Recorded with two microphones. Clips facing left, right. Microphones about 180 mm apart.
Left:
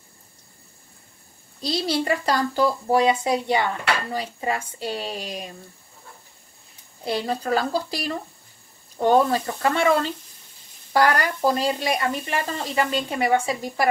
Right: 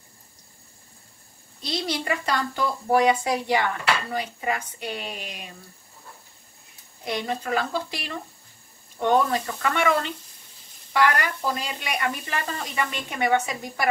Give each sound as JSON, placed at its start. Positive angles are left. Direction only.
{"t": 1.6, "sound": "speech", "side_deg": 30}
{"t": 2.9, "sound": "speech", "side_deg": 20}
{"t": 7.1, "sound": "speech", "side_deg": 35}
{"t": 12.1, "sound": "speech", "side_deg": 25}